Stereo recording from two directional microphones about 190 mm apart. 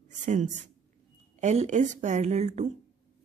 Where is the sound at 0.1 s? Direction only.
40° right (ahead or behind).